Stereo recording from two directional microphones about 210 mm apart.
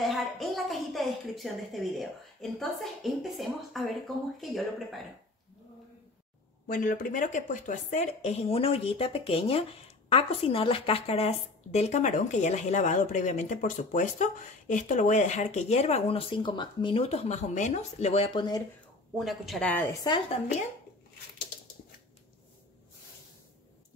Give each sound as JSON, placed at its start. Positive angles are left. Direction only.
{"t": 0.0, "sound": "a woman's voice", "side_deg": 0}
{"t": 6.7, "sound": "a woman's voice", "side_deg": 40}
{"t": 19.1, "sound": "a woman's voice", "side_deg": 0}